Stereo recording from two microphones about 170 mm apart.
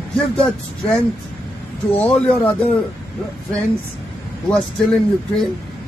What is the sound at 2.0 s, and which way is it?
Speech, 10° left (ahead or behind).